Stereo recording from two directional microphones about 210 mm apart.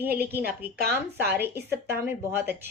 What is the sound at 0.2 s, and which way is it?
A woman's voice, 10° right (ahead or behind).